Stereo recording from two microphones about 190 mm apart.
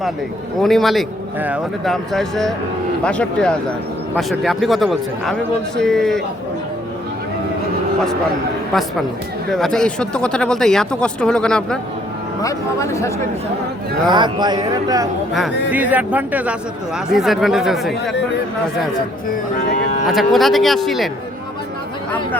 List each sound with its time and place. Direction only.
0.6 s speech: centre (ahead or behind)
9.5 s speech: centre (ahead or behind)
12.4 s speech: 15° left (ahead or behind)
14.1 s speech: 25° right (ahead or behind)
15.3 s speech: 5° right (ahead or behind)
20.1 s speech: centre (ahead or behind)